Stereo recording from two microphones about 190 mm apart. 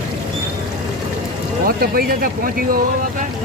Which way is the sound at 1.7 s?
50° right (ahead or behind).